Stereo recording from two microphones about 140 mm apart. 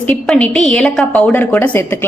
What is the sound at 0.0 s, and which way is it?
A woman's voice, 10° left (ahead or behind).